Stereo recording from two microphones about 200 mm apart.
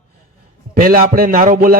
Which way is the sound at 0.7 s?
45° right (ahead or behind).